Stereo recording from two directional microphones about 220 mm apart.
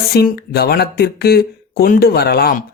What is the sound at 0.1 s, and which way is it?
Speech, 45° left (ahead or behind).